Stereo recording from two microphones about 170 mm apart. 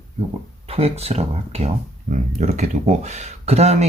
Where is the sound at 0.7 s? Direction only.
35° right (ahead or behind).